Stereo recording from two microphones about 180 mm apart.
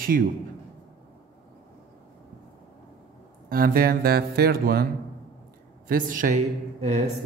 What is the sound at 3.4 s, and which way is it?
Speech, 50° right (ahead or behind).